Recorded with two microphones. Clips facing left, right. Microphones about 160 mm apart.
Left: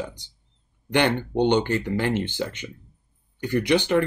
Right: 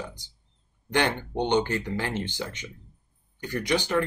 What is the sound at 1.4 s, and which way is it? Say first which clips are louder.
Speech: left 4 dB; 60° left (ahead or behind).